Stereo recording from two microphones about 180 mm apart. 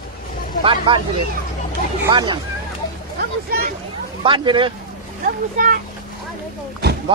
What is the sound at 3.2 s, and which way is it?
Speech, 60° right (ahead or behind).